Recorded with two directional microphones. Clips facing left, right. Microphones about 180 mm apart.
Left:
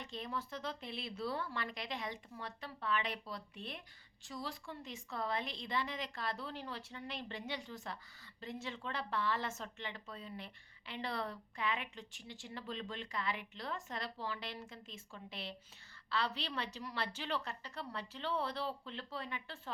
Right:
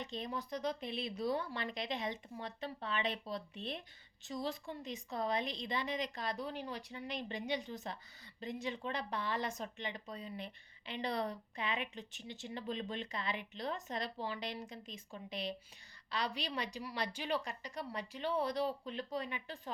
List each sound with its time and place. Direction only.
0.0 s a woman's voice: 20° right (ahead or behind)